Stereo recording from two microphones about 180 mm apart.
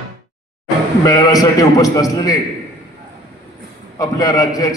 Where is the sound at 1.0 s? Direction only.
20° left (ahead or behind).